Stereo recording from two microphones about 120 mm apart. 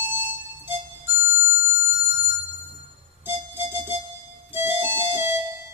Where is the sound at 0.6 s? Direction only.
20° right (ahead or behind).